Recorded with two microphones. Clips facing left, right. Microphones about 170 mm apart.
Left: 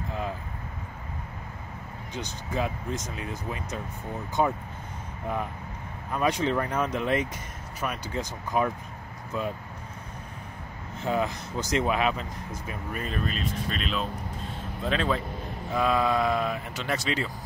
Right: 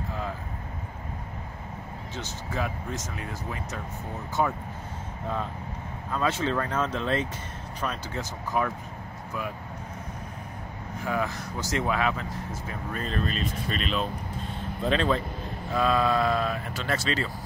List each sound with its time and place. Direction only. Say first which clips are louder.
2.1 s speech: left 2 dB; 20° left (ahead or behind)
6.1 s speech: left 1 dB; 15° left (ahead or behind)
11.0 s speech: left 2 dB; 20° left (ahead or behind)
13.2 s speech: right 1 dB; centre (ahead or behind)
15.7 s speech: right 1 dB; 15° left (ahead or behind)